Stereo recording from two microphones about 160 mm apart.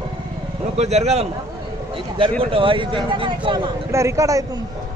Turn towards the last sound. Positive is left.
turn(degrees=-20)  # may be behind; listen again after turning